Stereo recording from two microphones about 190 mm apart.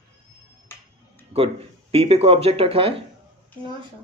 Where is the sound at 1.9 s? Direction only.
30° right (ahead or behind).